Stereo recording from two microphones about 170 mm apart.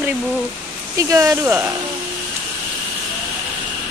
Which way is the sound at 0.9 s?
20° right (ahead or behind).